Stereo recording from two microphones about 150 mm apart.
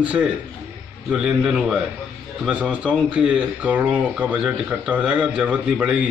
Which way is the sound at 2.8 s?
5° right (ahead or behind).